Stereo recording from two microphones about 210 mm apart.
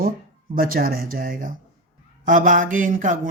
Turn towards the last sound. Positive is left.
turn(degrees=-40)  # may be behind; listen again after turning